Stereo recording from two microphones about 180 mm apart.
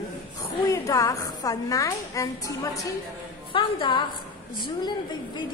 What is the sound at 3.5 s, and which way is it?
A woman's voice, 30° left (ahead or behind).